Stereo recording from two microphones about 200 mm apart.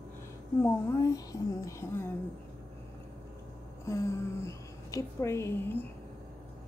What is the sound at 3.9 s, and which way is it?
A woman's voice, 15° left (ahead or behind).